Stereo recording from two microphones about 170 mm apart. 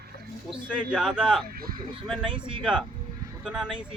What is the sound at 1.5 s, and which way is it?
Speech, 60° right (ahead or behind).